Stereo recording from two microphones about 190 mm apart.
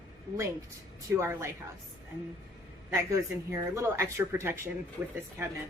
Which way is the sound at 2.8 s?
10° right (ahead or behind).